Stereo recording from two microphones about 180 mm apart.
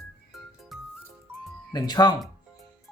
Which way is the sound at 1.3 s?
10° right (ahead or behind).